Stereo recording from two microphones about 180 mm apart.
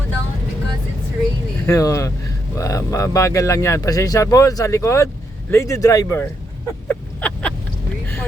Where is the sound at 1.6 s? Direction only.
20° left (ahead or behind).